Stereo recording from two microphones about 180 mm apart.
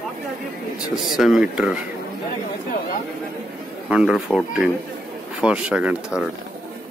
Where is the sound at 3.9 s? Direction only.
5° right (ahead or behind).